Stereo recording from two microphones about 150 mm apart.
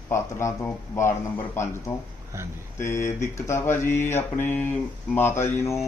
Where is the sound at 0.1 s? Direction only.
15° left (ahead or behind).